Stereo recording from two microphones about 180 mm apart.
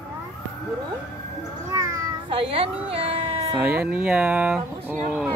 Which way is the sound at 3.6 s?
10° right (ahead or behind).